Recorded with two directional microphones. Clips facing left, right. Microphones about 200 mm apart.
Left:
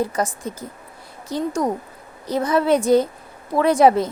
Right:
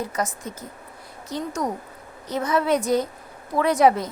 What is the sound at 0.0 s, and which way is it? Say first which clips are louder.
A woman's voice: left 5 dB; 30° left (ahead or behind).